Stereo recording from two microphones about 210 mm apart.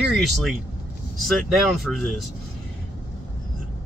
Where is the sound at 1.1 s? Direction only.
Centre (ahead or behind).